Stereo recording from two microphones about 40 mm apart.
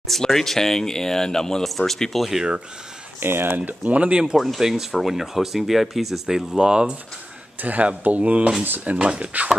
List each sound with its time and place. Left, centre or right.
0.1 s speech: centre
3.2 s speech: right
3.8 s speech: right
4.4 s speech: centre
6.7 s speech: right
7.6 s speech: right
8.9 s speech: right